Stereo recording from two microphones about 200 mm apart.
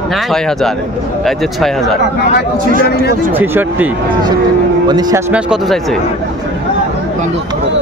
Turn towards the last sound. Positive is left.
turn(degrees=0)  # may be behind; listen again after turning